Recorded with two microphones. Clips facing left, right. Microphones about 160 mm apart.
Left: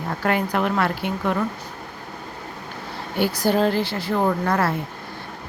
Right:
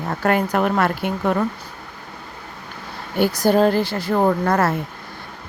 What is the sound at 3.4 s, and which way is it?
Speech, 45° right (ahead or behind).